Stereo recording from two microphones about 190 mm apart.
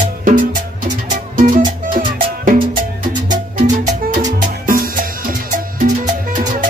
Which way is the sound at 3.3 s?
45° right (ahead or behind).